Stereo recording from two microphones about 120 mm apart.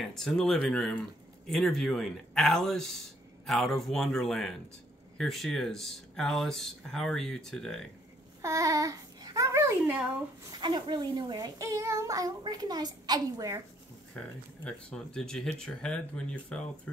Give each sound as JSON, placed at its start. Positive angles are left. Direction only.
{"t": 0.0, "sound": "speech", "side_deg": 5}
{"t": 8.4, "sound": "babbling", "side_deg": -25}
{"t": 10.5, "sound": "a child's voice", "side_deg": -40}
{"t": 14.1, "sound": "speech", "side_deg": 10}